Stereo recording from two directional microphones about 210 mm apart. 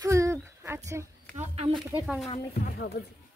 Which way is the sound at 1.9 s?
5° right (ahead or behind).